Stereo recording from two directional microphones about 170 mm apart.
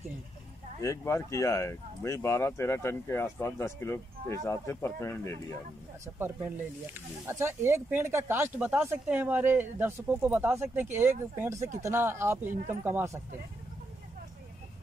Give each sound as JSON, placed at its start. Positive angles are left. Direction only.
{"t": 0.8, "sound": "speech", "side_deg": 15}
{"t": 6.1, "sound": "speech", "side_deg": -15}